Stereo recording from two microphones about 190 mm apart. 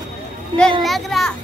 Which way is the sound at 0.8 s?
Centre (ahead or behind).